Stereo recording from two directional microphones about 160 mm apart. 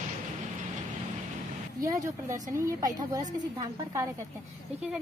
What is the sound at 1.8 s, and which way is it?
A woman's voice, 20° right (ahead or behind).